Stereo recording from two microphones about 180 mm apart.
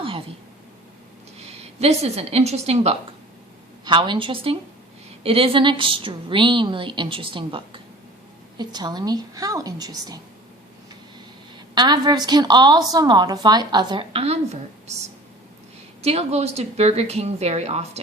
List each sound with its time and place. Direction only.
1.4 s a woman's voice: 35° right (ahead or behind)
3.8 s a woman's voice: 25° right (ahead or behind)
11.7 s a woman's voice: 25° right (ahead or behind)